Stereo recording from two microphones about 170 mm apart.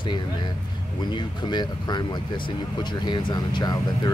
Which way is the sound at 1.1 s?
25° left (ahead or behind).